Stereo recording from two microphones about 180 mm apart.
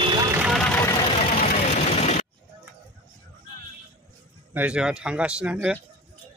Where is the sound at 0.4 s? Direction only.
Centre (ahead or behind).